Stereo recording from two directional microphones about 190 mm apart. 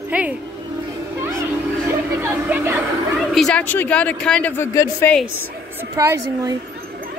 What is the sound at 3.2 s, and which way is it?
Speech, centre (ahead or behind).